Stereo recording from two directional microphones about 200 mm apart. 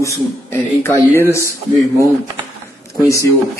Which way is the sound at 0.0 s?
15° left (ahead or behind).